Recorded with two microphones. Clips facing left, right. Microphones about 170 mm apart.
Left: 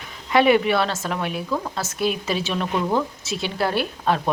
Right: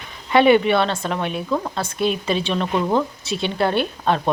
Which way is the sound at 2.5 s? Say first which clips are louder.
Right 2 dB; 20° right (ahead or behind).